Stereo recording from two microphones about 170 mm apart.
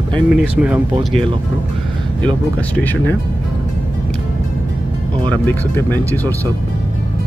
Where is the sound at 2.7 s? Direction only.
10° left (ahead or behind).